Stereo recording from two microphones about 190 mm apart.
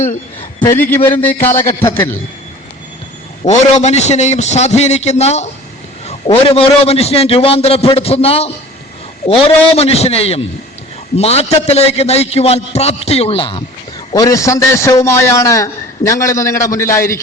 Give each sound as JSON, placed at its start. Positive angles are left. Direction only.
{"t": 0.6, "sound": "a man's voice", "side_deg": 10}
{"t": 3.4, "sound": "a man's voice", "side_deg": 35}
{"t": 14.1, "sound": "a man's voice", "side_deg": 20}